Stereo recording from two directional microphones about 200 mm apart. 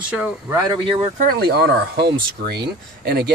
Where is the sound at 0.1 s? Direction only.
5° right (ahead or behind).